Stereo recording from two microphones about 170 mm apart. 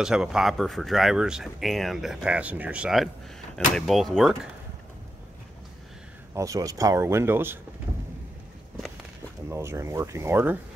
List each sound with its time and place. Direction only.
0.0 s speech: 5° right (ahead or behind)
6.3 s speech: 20° right (ahead or behind)
9.5 s speech: 15° right (ahead or behind)